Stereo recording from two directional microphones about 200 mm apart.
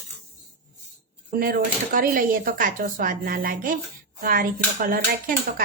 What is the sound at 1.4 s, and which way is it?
Cutlery, 45° right (ahead or behind).